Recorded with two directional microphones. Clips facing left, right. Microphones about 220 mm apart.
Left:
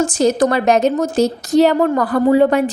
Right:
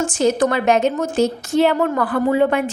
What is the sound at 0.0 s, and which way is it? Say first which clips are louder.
A woman's voice: left 3 dB; 40° left (ahead or behind).